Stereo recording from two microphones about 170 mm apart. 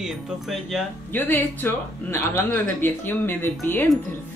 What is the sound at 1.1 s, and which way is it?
Speech, 10° left (ahead or behind).